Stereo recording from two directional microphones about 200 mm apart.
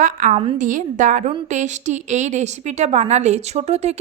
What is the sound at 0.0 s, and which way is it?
A woman's voice, 40° right (ahead or behind).